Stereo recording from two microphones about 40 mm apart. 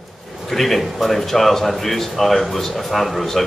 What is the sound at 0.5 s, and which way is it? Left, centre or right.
Speech, centre.